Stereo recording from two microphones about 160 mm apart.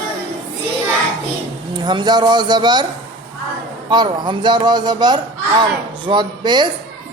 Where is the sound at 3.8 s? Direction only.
30° right (ahead or behind).